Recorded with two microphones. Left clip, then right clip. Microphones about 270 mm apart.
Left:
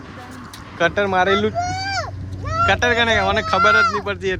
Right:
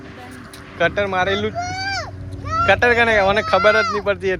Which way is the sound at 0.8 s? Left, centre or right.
Centre.